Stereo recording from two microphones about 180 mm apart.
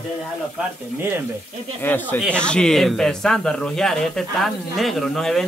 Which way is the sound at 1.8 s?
10° left (ahead or behind).